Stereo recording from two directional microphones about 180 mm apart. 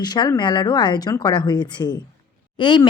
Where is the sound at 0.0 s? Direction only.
25° left (ahead or behind).